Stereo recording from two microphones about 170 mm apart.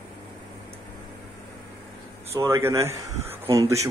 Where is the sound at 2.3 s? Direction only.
15° right (ahead or behind).